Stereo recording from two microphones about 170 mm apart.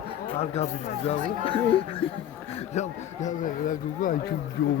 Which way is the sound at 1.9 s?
35° left (ahead or behind).